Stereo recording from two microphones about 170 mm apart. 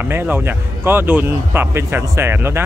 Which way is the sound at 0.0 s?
10° right (ahead or behind).